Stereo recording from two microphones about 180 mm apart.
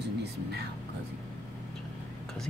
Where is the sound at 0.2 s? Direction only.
65° right (ahead or behind).